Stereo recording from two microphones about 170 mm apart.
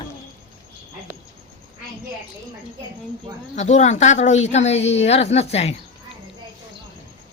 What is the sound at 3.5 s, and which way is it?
Speech, 45° left (ahead or behind).